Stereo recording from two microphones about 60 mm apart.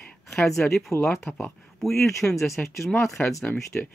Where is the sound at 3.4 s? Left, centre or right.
Centre.